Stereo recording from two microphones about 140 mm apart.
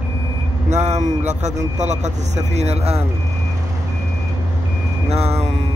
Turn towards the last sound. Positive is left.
turn(degrees=-50)  # may be behind; listen again after turning